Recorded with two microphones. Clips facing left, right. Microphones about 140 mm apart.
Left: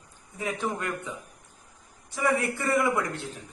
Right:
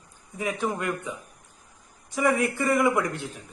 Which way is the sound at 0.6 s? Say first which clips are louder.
Right 3 dB; 15° right (ahead or behind).